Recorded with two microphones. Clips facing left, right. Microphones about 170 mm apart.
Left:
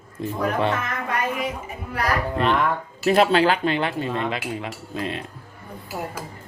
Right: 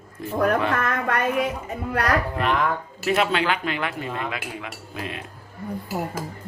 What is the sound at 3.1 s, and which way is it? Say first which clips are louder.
Speech: left 5 dB; 35° left (ahead or behind).